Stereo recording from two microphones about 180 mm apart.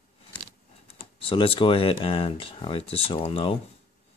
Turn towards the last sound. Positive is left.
turn(degrees=30)  # may be behind; listen again after turning